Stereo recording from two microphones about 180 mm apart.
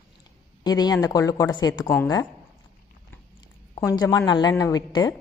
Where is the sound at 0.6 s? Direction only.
20° left (ahead or behind).